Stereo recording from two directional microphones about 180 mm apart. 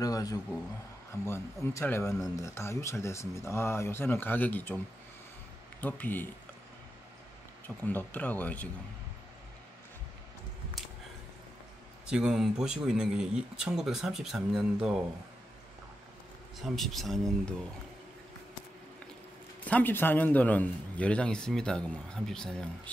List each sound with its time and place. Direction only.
0.0 s a man's voice: 20° left (ahead or behind)
5.8 s a man's voice: 10° left (ahead or behind)
7.6 s a man's voice: 10° left (ahead or behind)
12.1 s speech: 5° right (ahead or behind)
16.6 s speech: centre (ahead or behind)
19.6 s a man's voice: 10° left (ahead or behind)